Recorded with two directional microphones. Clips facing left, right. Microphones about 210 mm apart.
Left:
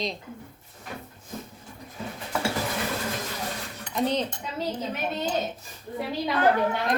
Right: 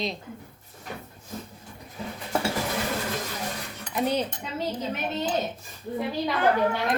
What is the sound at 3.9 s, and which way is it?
Speech, 10° right (ahead or behind).